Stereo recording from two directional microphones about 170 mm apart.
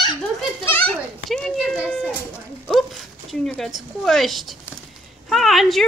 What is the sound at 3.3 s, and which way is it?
Speech, 5° left (ahead or behind).